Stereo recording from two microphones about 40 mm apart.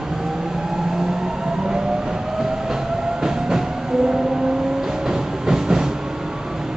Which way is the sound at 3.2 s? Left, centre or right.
Centre.